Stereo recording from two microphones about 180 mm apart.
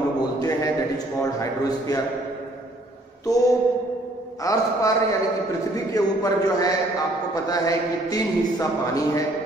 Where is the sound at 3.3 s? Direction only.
20° left (ahead or behind).